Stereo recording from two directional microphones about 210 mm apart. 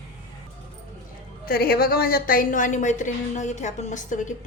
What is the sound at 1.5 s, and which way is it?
A woman's voice, 45° left (ahead or behind).